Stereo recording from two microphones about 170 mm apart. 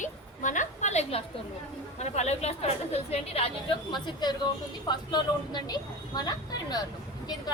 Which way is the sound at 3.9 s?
25° left (ahead or behind).